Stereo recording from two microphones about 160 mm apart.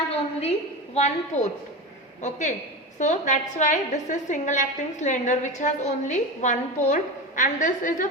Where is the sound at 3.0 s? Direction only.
45° left (ahead or behind).